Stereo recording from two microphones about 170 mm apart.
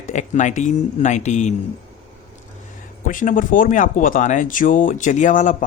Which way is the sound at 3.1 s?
50° left (ahead or behind).